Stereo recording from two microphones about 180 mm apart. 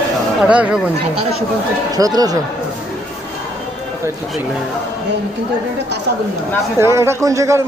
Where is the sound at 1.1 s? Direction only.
35° right (ahead or behind).